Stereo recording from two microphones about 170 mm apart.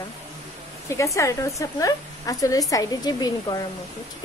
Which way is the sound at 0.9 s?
15° left (ahead or behind).